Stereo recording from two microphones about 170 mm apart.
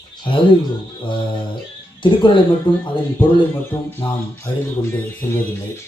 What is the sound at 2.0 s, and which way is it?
Speech, 30° left (ahead or behind).